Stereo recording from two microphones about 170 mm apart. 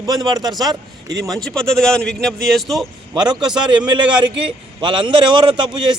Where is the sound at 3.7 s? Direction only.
25° right (ahead or behind).